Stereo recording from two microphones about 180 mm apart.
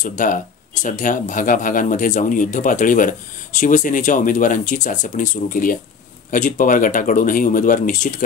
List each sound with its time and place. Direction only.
0.0 s speech: 45° left (ahead or behind)